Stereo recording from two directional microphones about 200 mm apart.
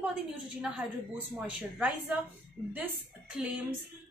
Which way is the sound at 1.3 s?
5° right (ahead or behind).